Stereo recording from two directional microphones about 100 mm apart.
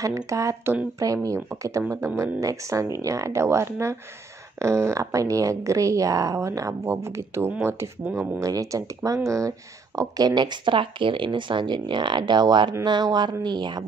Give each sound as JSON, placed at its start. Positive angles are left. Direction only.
{"t": 0.3, "sound": "speech", "side_deg": -30}